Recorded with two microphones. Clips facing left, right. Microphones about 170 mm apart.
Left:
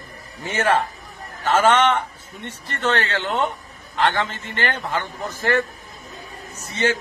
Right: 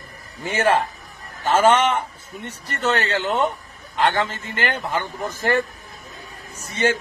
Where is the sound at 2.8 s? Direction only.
5° right (ahead or behind).